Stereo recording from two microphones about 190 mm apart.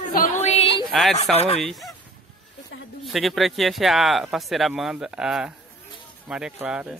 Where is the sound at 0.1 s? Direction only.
50° left (ahead or behind).